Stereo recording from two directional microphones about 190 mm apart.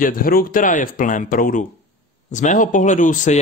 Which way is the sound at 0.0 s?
50° left (ahead or behind).